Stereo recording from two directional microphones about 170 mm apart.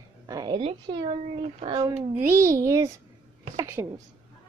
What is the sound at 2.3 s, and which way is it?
A woman's voice, 15° right (ahead or behind).